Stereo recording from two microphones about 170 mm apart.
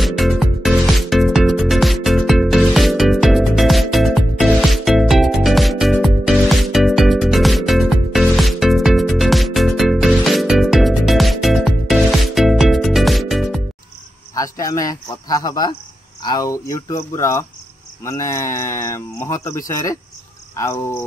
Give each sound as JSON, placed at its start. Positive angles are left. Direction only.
{"t": 0.0, "sound": "music", "side_deg": 0}
{"t": 14.3, "sound": "cricket", "side_deg": 20}
{"t": 16.2, "sound": "speech", "side_deg": 25}